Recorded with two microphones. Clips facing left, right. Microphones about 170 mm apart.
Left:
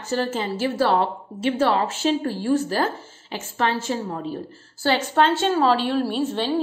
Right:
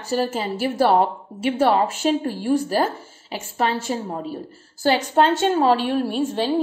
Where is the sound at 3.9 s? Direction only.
30° right (ahead or behind).